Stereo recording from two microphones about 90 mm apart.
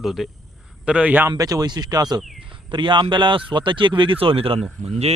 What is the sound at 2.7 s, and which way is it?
Speech, 65° right (ahead or behind).